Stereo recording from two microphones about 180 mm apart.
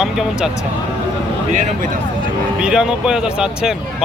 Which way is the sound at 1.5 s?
45° right (ahead or behind).